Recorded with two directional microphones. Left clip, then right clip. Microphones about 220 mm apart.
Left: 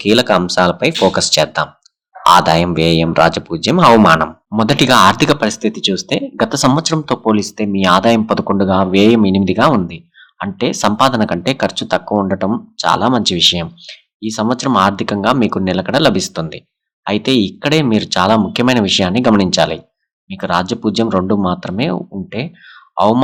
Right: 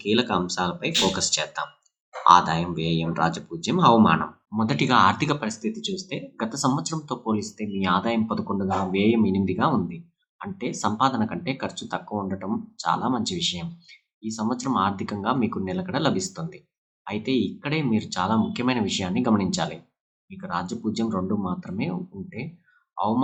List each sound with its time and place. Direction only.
0.0 s speech: 40° left (ahead or behind)